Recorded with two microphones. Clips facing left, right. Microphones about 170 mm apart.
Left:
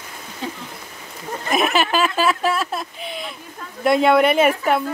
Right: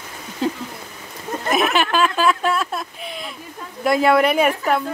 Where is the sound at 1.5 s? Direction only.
Centre (ahead or behind).